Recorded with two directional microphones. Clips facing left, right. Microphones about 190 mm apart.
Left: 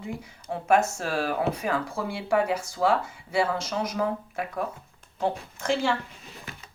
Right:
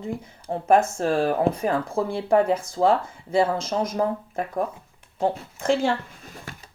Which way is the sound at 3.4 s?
50° right (ahead or behind).